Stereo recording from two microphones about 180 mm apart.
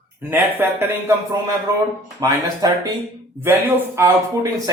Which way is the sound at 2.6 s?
20° right (ahead or behind).